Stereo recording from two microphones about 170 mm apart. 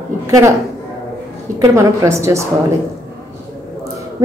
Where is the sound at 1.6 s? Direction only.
20° right (ahead or behind).